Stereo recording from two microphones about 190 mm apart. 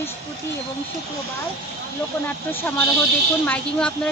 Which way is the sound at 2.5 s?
10° left (ahead or behind).